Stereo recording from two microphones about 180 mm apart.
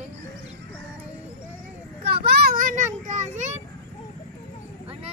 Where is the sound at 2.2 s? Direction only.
60° right (ahead or behind); by 3.5 s 40° right (ahead or behind).